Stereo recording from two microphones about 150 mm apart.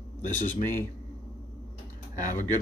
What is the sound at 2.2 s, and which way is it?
Speech, 55° left (ahead or behind).